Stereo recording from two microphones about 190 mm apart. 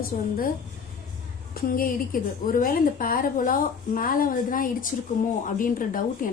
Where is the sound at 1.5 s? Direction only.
50° left (ahead or behind).